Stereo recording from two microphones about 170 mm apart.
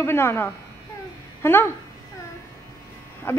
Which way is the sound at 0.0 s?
15° left (ahead or behind).